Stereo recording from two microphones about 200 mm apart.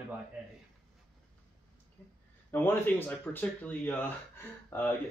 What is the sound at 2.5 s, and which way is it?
Speech, 10° left (ahead or behind).